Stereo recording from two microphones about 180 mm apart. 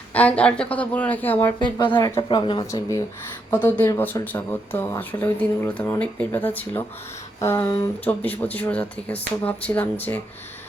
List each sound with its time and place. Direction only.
0.1 s speech: 10° left (ahead or behind)
1.5 s speech: 25° left (ahead or behind)
3.5 s speech: 10° left (ahead or behind)